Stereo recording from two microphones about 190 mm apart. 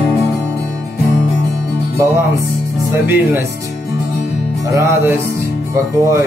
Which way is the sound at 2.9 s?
10° right (ahead or behind).